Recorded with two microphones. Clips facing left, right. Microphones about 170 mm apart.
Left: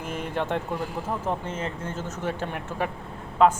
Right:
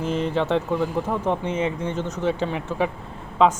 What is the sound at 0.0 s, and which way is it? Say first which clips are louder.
Speech: right 6 dB; 10° left (ahead or behind).